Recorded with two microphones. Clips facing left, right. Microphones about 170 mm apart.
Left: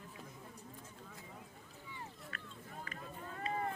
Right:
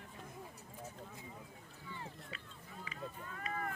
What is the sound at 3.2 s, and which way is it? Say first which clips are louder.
Boat: left 5 dB; 30° left (ahead or behind).